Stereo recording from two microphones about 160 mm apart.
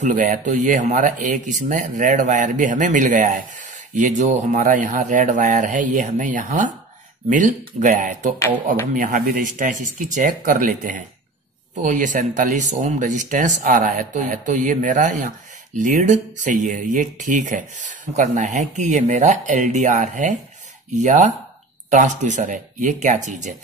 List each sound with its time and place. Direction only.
0.0 s speech: 50° right (ahead or behind)